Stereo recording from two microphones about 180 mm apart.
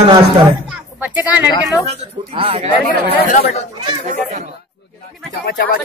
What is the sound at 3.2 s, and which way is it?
Speech, 45° left (ahead or behind).